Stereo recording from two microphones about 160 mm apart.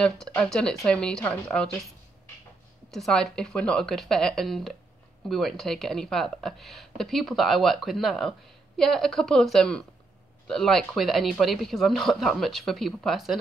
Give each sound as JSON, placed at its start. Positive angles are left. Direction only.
{"t": 0.0, "sound": "speech", "side_deg": 5}
{"t": 2.9, "sound": "speech", "side_deg": 5}